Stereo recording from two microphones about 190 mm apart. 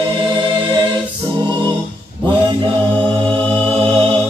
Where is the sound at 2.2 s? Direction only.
25° right (ahead or behind).